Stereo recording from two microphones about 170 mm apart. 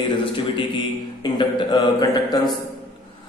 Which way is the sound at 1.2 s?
25° left (ahead or behind).